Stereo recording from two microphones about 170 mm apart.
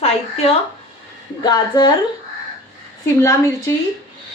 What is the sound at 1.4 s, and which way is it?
Speech, 25° left (ahead or behind).